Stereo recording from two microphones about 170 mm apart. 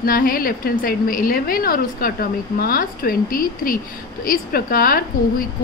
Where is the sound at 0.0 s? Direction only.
60° left (ahead or behind).